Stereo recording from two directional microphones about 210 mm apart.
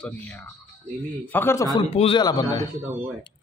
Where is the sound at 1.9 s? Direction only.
25° left (ahead or behind).